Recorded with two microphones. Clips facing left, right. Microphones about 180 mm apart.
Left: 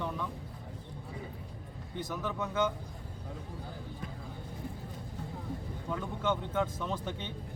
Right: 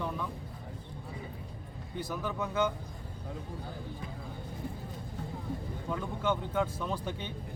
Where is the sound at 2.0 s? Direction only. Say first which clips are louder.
Right 1 dB; 10° right (ahead or behind).